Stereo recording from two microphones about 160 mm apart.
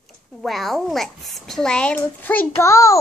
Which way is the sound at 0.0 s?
Centre (ahead or behind).